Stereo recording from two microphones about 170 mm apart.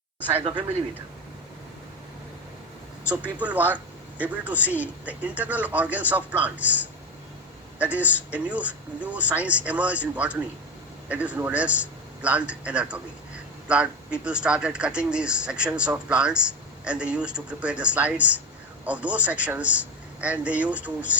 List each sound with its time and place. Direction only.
0.3 s speech: 30° right (ahead or behind)
3.1 s speech: 10° right (ahead or behind)